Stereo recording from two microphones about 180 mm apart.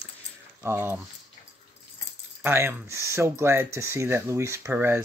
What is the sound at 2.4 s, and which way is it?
Speech, 15° right (ahead or behind).